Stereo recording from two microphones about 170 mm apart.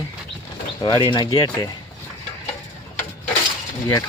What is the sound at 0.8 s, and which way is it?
Speech, 25° left (ahead or behind).